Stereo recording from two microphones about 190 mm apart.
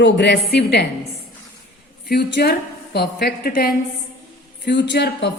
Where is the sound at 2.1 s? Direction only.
60° left (ahead or behind).